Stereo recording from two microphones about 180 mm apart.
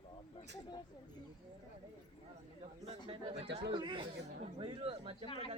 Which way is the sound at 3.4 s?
70° right (ahead or behind).